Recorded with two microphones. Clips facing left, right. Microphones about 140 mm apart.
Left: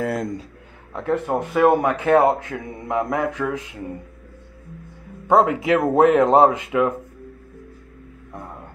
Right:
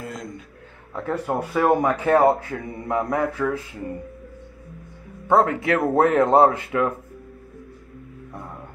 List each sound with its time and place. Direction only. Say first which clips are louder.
0.9 s speech: left 3 dB; 5° right (ahead or behind)
1.5 s mantra: left 3 dB; 10° left (ahead or behind)
5.3 s mantra: left 2 dB; 15° left (ahead or behind)
6.1 s speech: left 1 dB; 20° left (ahead or behind)
6.6 s mantra: left 3 dB; 15° left (ahead or behind)